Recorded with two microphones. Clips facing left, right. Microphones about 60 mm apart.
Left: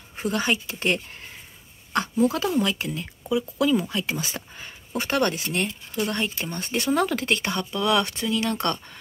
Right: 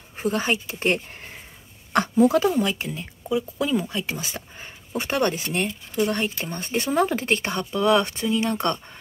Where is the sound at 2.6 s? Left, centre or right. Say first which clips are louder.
Even; centre.